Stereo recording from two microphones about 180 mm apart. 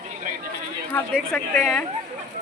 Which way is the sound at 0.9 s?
5° left (ahead or behind).